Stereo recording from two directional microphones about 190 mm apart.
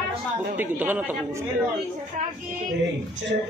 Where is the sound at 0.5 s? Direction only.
10° right (ahead or behind).